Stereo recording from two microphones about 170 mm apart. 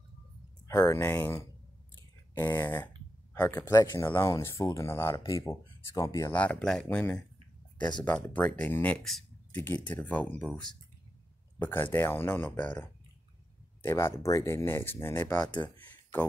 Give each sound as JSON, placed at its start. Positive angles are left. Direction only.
{"t": 0.7, "sound": "speech", "side_deg": 20}
{"t": 3.7, "sound": "speech", "side_deg": 25}
{"t": 13.8, "sound": "speech", "side_deg": 15}
{"t": 15.4, "sound": "speech", "side_deg": 25}
{"t": 15.7, "sound": "a sound", "side_deg": 10}